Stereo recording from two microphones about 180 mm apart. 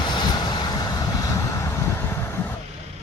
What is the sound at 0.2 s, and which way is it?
Vehicle, 25° left (ahead or behind).